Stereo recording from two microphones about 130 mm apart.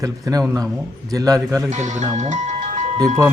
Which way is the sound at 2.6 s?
65° right (ahead or behind).